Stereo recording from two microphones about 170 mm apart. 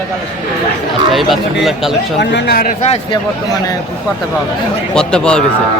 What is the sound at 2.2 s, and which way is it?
Speech, 85° left.